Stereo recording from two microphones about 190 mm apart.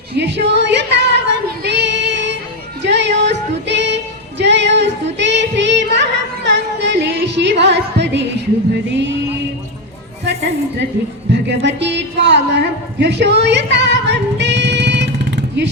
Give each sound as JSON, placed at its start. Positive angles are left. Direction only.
{"t": 0.2, "sound": "female singing", "side_deg": -65}
{"t": 2.8, "sound": "music", "side_deg": -65}
{"t": 3.7, "sound": "female singing", "side_deg": -65}
{"t": 5.1, "sound": "music", "side_deg": -70}
{"t": 11.3, "sound": "a sound", "side_deg": -65}